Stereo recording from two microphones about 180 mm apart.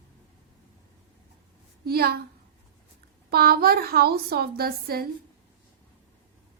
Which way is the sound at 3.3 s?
60° right (ahead or behind).